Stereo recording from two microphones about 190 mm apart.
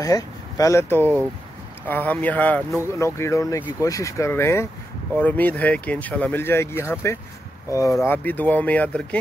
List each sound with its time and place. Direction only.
0.0 s speech: 20° left (ahead or behind)